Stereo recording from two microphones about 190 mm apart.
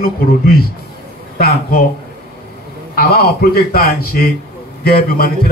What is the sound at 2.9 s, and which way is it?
A man's voice, 50° left (ahead or behind).